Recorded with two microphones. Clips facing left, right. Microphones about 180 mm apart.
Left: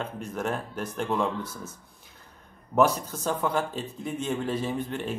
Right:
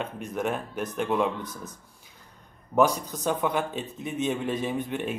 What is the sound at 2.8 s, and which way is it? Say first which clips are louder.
Speech: even; 15° right (ahead or behind).